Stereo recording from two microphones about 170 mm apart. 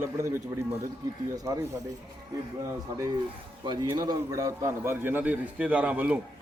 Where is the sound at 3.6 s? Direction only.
25° right (ahead or behind).